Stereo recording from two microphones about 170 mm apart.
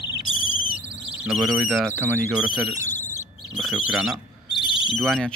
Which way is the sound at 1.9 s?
10° right (ahead or behind).